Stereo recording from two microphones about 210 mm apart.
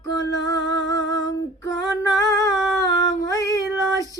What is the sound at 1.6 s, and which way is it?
Female singing, 15° left (ahead or behind).